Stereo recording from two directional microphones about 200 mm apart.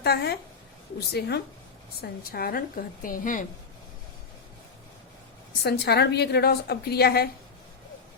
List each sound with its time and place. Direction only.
0.0 s a woman's voice: 55° left (ahead or behind)
5.6 s a woman's voice: 55° left (ahead or behind)